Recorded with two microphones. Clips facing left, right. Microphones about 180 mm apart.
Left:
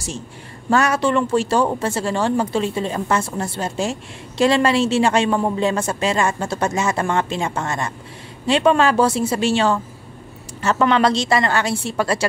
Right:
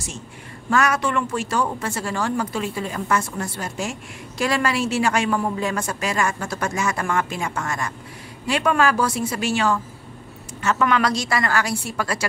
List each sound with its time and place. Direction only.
0.7 s speech: 30° left (ahead or behind)